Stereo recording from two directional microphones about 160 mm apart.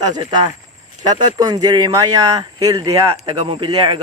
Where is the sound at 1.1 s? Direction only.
25° right (ahead or behind).